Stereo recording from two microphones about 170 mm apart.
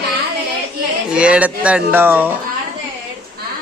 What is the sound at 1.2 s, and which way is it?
Speech, 5° right (ahead or behind).